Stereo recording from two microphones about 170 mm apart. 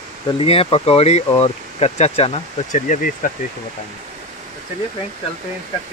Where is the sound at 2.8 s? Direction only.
50° left (ahead or behind).